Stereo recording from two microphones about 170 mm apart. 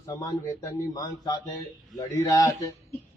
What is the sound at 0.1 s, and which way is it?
A man's voice, 20° left (ahead or behind).